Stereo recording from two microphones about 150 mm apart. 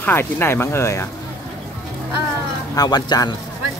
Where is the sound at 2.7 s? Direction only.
25° left (ahead or behind).